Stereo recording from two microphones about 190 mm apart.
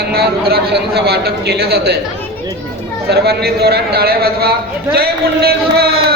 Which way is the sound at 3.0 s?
60° right (ahead or behind).